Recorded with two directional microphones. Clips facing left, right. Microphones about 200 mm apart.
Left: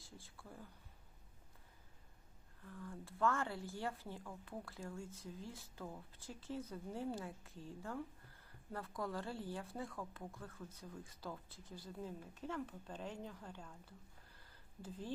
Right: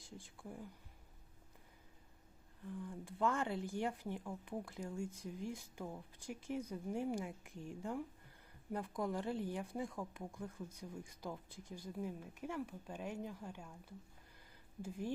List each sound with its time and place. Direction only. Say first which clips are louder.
0.0 s speech: right 5 dB; 15° right (ahead or behind)
2.6 s speech: right 5 dB; 15° right (ahead or behind)